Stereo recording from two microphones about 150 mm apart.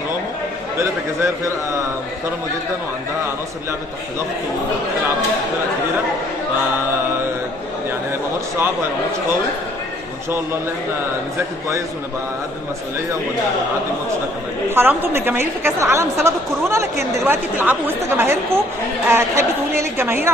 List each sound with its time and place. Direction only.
0.7 s a man's voice: 20° right (ahead or behind)
14.7 s a woman's voice: 15° right (ahead or behind)